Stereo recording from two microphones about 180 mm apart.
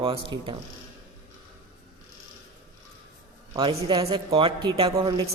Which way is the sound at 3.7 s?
30° right (ahead or behind).